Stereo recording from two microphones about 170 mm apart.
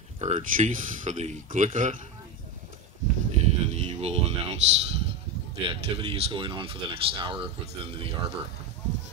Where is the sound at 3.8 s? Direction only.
40° right (ahead or behind).